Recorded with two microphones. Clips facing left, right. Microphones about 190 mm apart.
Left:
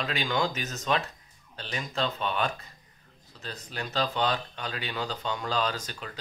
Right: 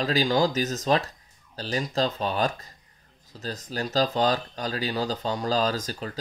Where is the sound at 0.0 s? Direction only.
35° right (ahead or behind).